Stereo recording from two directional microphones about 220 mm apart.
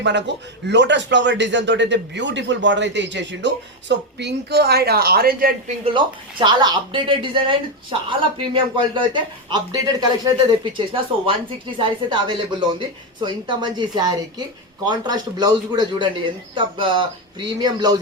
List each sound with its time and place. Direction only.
0.0 s a man's voice: 50° right (ahead or behind)
6.4 s speech: 20° right (ahead or behind)